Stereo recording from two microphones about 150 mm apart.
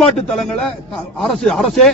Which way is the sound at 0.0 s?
5° left (ahead or behind).